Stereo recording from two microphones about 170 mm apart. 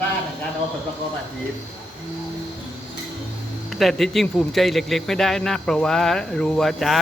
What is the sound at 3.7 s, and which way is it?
Speech, centre (ahead or behind).